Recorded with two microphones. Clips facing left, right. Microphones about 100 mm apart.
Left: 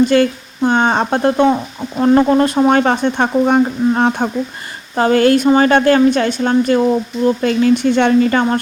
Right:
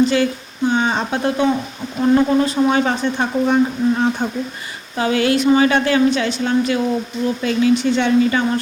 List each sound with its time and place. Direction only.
0.1 s speech: 55° left (ahead or behind)
4.9 s speech: 45° left (ahead or behind)